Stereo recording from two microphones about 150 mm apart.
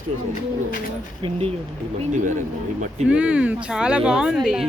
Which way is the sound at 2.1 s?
60° right (ahead or behind).